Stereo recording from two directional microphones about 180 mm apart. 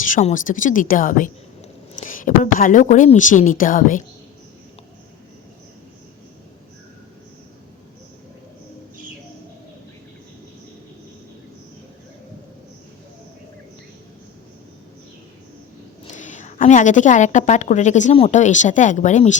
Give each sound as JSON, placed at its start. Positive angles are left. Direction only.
{"t": 0.0, "sound": "a woman's voice", "side_deg": 40}
{"t": 16.0, "sound": "a woman's voice", "side_deg": 45}